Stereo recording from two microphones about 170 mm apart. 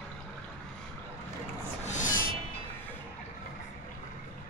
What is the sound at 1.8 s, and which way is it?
Music, 45° left (ahead or behind).